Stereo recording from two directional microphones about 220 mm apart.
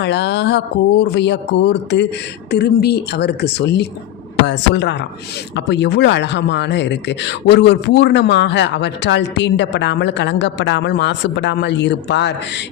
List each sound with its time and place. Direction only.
0.0 s speech: 50° left (ahead or behind)